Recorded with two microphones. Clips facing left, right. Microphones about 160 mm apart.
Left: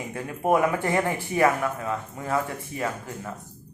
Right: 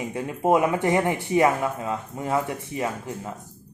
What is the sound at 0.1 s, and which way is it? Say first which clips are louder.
Speech: right 2 dB; 20° right (ahead or behind).